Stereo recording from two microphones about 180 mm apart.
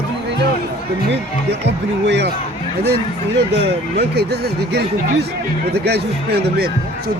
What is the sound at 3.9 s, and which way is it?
Speech, 65° right (ahead or behind).